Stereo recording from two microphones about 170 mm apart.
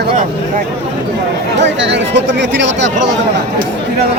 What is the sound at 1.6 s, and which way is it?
Speech, 90° right.